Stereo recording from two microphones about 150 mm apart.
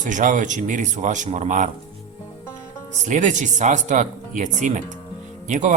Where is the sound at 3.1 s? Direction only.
55° right (ahead or behind).